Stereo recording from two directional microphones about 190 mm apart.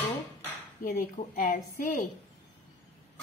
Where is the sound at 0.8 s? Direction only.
40° left (ahead or behind).